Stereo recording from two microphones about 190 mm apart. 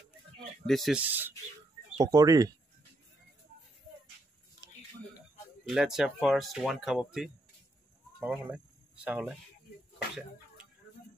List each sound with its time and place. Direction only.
0.7 s speech: centre (ahead or behind); by 2.5 s 20° right (ahead or behind)
5.7 s speech: centre (ahead or behind)